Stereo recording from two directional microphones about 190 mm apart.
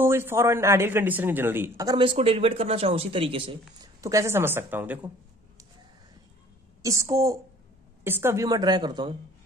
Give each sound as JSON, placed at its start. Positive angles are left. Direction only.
{"t": 0.0, "sound": "a man's voice", "side_deg": -15}
{"t": 6.8, "sound": "a man's voice", "side_deg": -15}